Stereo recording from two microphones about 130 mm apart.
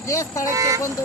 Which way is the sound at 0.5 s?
25° right (ahead or behind).